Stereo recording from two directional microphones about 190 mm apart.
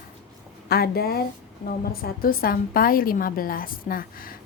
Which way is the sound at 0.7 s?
55° left (ahead or behind).